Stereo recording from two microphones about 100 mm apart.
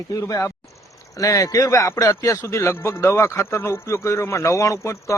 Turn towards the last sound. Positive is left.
turn(degrees=30)  # may be behind; listen again after turning